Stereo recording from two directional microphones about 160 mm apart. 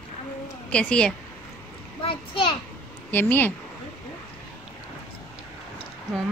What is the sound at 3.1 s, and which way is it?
Speech, 10° left (ahead or behind).